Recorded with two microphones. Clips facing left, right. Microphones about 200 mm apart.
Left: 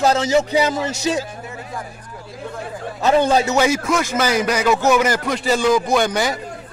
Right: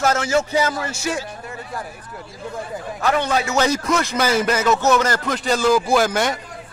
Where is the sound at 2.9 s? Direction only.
25° left (ahead or behind).